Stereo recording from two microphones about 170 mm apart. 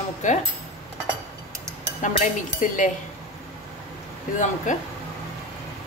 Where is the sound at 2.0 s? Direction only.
50° left (ahead or behind).